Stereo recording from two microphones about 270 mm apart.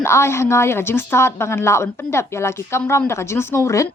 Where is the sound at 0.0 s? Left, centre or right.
Centre.